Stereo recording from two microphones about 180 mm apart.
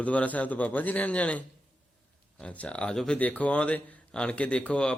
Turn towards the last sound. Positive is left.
turn(degrees=5)  # may be behind; listen again after turning